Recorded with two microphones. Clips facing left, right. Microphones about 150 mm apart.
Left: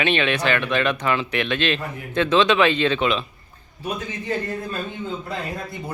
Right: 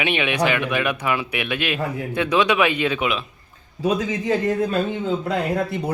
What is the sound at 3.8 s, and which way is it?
Speech, 90° right.